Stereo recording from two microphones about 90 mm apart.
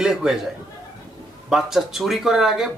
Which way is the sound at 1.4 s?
5° right (ahead or behind).